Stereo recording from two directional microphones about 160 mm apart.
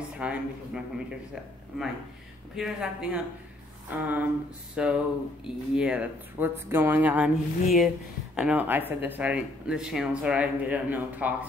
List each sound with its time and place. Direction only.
0.2 s speech: 10° right (ahead or behind)
2.5 s speech: 5° right (ahead or behind)